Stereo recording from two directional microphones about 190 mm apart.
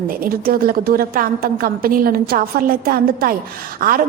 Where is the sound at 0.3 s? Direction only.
50° right (ahead or behind).